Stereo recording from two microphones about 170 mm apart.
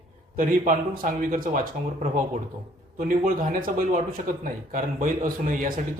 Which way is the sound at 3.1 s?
50° right (ahead or behind).